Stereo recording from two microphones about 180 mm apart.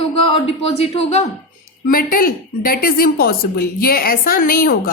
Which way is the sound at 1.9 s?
50° left (ahead or behind).